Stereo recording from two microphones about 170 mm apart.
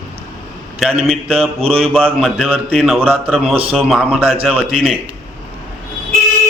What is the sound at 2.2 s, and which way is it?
A man's voice, 5° left (ahead or behind).